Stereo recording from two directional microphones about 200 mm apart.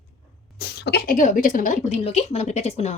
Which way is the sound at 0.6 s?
55° left (ahead or behind).